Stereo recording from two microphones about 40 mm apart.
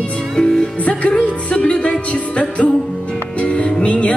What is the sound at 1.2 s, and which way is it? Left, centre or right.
Music, left.